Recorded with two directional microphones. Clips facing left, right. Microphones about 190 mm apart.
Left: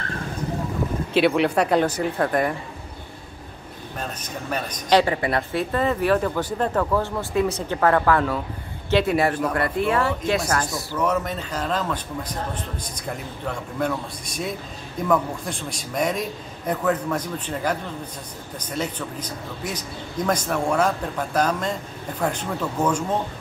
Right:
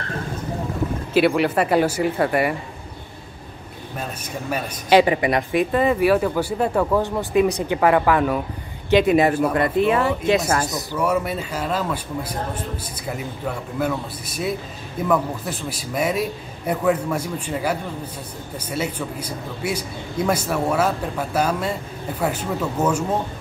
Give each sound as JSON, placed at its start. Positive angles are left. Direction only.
{"t": 1.1, "sound": "speech", "side_deg": 0}
{"t": 4.0, "sound": "speech", "side_deg": -10}